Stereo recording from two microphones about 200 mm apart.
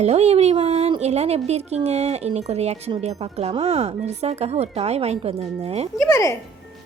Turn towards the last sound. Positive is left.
turn(degrees=15)  # may be behind; listen again after turning